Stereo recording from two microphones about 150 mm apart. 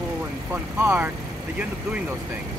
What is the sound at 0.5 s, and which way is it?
Speech, 15° right (ahead or behind).